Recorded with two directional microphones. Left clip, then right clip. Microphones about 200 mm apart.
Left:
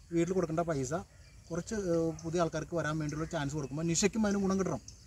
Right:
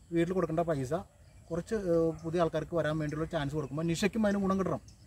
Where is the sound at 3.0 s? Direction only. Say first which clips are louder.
Right 2 dB; 40° right (ahead or behind).